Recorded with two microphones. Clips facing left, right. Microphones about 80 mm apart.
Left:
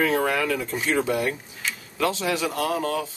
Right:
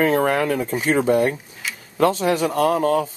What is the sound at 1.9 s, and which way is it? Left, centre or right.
Speech, right.